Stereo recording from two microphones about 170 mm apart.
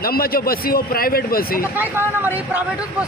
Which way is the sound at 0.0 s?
60° left (ahead or behind).